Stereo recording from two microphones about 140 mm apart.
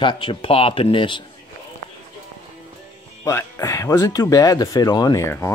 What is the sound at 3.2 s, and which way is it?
Speech, 20° left (ahead or behind).